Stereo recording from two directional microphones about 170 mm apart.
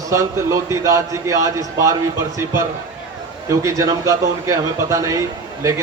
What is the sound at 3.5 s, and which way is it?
Speech, 20° right (ahead or behind).